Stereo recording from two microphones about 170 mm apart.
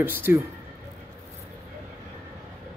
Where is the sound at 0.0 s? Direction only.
10° right (ahead or behind).